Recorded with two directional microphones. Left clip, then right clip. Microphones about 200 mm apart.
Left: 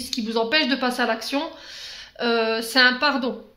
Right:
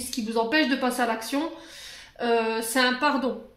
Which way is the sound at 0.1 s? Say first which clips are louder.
Left 3 dB; 40° left (ahead or behind).